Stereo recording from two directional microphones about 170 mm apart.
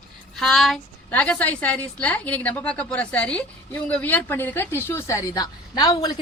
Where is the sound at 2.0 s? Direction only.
10° left (ahead or behind).